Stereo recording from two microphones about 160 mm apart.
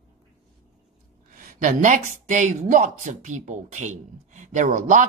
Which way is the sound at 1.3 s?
55° right (ahead or behind).